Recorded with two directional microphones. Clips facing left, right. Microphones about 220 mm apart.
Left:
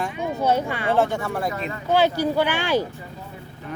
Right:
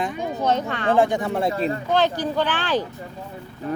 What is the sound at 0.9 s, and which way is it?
Speech, 15° right (ahead or behind).